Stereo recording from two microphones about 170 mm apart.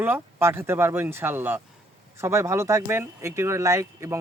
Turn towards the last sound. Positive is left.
turn(degrees=-15)  # may be behind; listen again after turning